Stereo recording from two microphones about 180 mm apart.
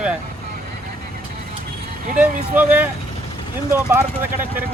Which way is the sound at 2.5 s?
10° right (ahead or behind).